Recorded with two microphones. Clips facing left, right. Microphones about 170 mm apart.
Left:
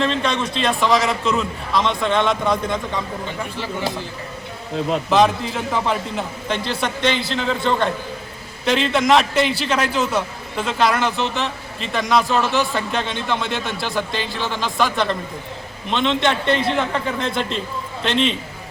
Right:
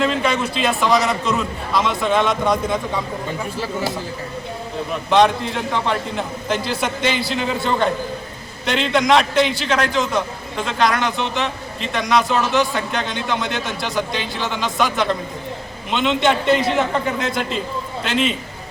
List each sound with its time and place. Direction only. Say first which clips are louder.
0.0 s a man's voice: right 1 dB; 5° right (ahead or behind)
5.0 s a man's voice: right 3 dB; centre (ahead or behind)